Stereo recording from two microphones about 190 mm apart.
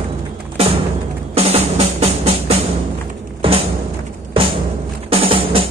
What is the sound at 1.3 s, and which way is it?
Music, 35° right (ahead or behind).